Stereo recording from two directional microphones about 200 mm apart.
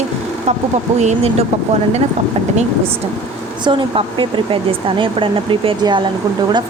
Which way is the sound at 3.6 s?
25° right (ahead or behind).